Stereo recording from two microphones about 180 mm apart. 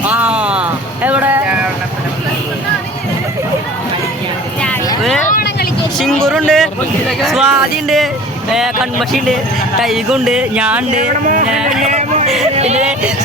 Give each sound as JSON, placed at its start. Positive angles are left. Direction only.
{"t": 0.0, "sound": "music", "side_deg": -5}
{"t": 5.3, "sound": "vehicle", "side_deg": 60}
{"t": 6.0, "sound": "vehicle", "side_deg": 5}
{"t": 7.2, "sound": "speech", "side_deg": 0}
{"t": 10.9, "sound": "music", "side_deg": -45}
{"t": 11.8, "sound": "a sound", "side_deg": -40}
{"t": 12.5, "sound": "speech", "side_deg": -35}